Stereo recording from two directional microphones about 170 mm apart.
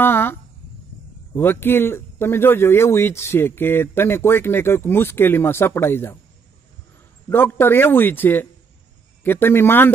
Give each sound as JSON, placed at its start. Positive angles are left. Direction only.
{"t": 0.0, "sound": "speech", "side_deg": 10}
{"t": 7.2, "sound": "speech", "side_deg": 10}